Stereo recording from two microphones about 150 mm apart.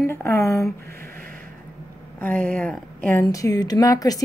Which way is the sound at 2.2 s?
10° left (ahead or behind).